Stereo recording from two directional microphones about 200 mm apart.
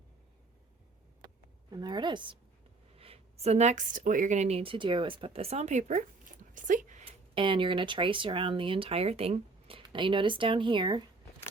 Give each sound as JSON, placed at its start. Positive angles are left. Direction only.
{"t": 1.7, "sound": "a woman's voice", "side_deg": -20}
{"t": 7.0, "sound": "speech", "side_deg": -25}